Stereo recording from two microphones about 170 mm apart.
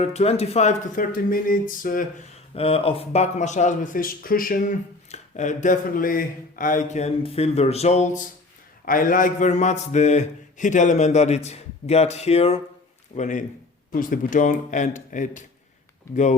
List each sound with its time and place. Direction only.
0.0 s speech: 40° left (ahead or behind)
2.6 s speech: 35° left (ahead or behind)
8.8 s speech: 55° left (ahead or behind)